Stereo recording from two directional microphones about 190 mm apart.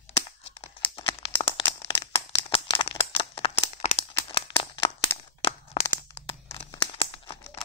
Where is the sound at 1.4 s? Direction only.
30° left (ahead or behind).